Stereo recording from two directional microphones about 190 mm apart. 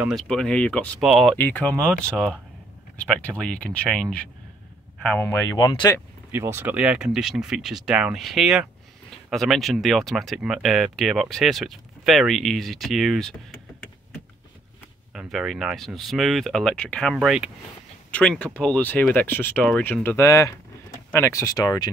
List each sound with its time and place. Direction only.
0.0 s speech: centre (ahead or behind); by 5.9 s 20° left (ahead or behind)
6.3 s speech: 10° right (ahead or behind)
15.1 s speech: centre (ahead or behind); by 21.9 s 20° left (ahead or behind)